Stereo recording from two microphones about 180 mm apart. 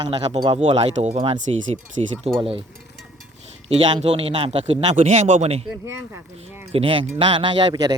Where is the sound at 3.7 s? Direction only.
35° right (ahead or behind).